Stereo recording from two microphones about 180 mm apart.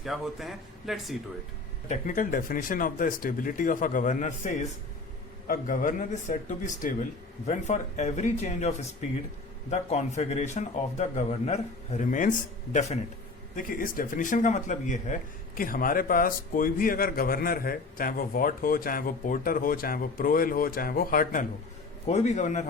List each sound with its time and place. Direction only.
0.0 s a man's voice: centre (ahead or behind)
1.9 s a man's voice: 45° left (ahead or behind)
22.0 s a man's voice: 40° left (ahead or behind)